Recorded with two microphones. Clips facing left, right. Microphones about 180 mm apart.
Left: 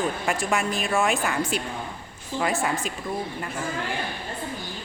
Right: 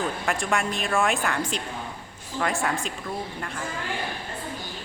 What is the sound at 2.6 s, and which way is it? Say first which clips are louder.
Speech: left 1 dB; 5° left (ahead or behind).